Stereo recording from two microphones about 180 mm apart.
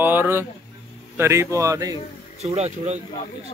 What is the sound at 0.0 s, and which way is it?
Speech, 10° right (ahead or behind).